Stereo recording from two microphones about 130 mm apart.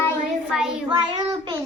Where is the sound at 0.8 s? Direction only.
40° right (ahead or behind).